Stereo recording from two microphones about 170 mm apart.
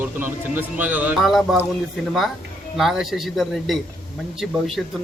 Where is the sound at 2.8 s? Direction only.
Centre (ahead or behind).